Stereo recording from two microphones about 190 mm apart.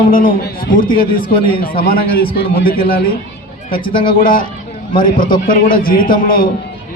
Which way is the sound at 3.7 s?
25° left (ahead or behind).